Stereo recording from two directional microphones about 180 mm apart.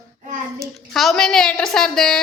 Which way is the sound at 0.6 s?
Centre (ahead or behind).